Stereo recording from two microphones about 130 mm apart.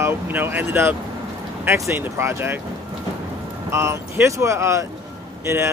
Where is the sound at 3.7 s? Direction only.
20° right (ahead or behind).